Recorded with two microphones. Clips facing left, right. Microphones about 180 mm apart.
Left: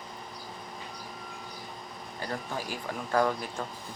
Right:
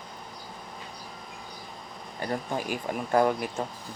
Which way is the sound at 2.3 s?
25° right (ahead or behind).